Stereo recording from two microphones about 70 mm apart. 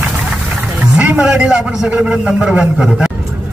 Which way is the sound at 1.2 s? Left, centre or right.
Centre.